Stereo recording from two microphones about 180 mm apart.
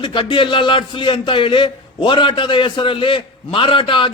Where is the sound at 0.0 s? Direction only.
25° left (ahead or behind).